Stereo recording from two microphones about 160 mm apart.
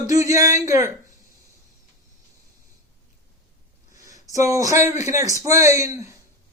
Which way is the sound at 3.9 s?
20° right (ahead or behind).